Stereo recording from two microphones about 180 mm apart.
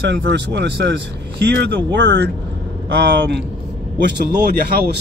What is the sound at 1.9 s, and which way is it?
Speech, 75° right (ahead or behind).